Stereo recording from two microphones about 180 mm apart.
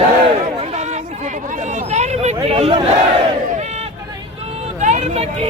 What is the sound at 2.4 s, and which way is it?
Speech, 35° right (ahead or behind).